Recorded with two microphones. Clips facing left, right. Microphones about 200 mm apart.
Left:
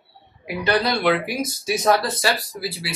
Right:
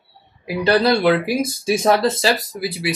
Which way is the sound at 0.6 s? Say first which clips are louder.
Right 5 dB; 30° right (ahead or behind).